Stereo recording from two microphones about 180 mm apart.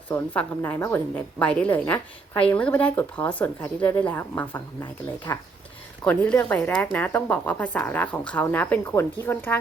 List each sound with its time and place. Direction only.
0.1 s speech: 10° left (ahead or behind)
6.1 s speech: 5° left (ahead or behind)